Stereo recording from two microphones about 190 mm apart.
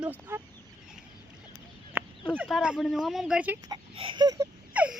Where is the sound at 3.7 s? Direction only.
25° right (ahead or behind).